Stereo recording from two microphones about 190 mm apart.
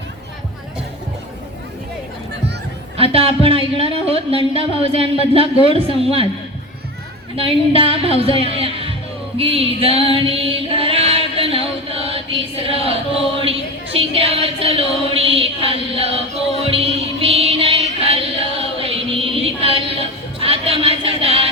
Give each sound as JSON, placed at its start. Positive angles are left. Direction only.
{"t": 3.1, "sound": "a woman's voice", "side_deg": -30}
{"t": 7.3, "sound": "speech", "side_deg": -30}
{"t": 10.2, "sound": "mantra", "side_deg": -30}
{"t": 13.4, "sound": "speech", "side_deg": -30}
{"t": 16.6, "sound": "music", "side_deg": -30}